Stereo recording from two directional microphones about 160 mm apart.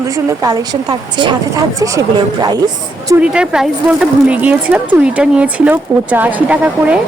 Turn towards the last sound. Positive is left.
turn(degrees=-10)  # may be behind; listen again after turning